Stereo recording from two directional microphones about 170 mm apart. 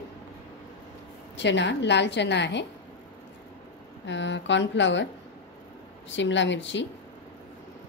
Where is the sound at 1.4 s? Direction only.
90° left.